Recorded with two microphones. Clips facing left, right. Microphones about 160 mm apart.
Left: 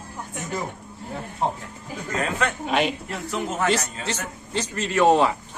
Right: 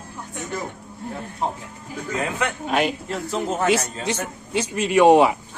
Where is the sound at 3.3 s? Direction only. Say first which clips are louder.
Right 2 dB; 30° right (ahead or behind).